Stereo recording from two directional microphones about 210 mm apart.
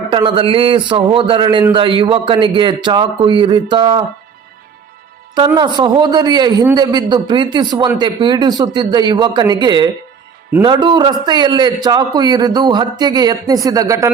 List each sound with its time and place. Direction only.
0.1 s a man's voice: 25° right (ahead or behind)
5.5 s a man's voice: 20° right (ahead or behind)